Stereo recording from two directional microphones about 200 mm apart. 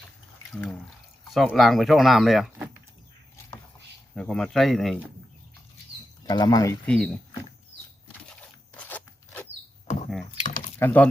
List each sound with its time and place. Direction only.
1.3 s speech: centre (ahead or behind)
4.1 s speech: 5° left (ahead or behind)
6.2 s speech: 20° left (ahead or behind)
6.8 s speech: centre (ahead or behind)
8.3 s a sound: 5° left (ahead or behind)
10.3 s a sound: 40° left (ahead or behind)
10.8 s speech: 10° left (ahead or behind)